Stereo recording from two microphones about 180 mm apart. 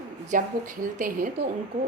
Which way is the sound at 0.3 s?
45° right (ahead or behind).